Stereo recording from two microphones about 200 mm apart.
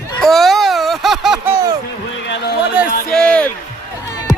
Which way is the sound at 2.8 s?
5° right (ahead or behind).